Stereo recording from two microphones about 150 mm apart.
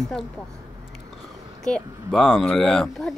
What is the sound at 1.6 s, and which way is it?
Speech, 5° left (ahead or behind).